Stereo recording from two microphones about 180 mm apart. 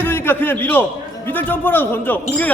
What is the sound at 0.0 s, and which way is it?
A man's voice, 10° left (ahead or behind).